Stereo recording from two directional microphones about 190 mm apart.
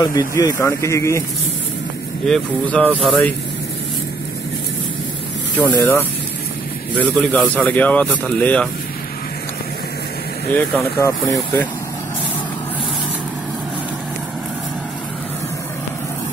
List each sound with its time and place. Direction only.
0.0 s speech: 20° left (ahead or behind)
2.2 s speech: 5° left (ahead or behind)
5.6 s speech: 5° left (ahead or behind)
7.0 s speech: 5° left (ahead or behind)
10.5 s speech: 15° left (ahead or behind)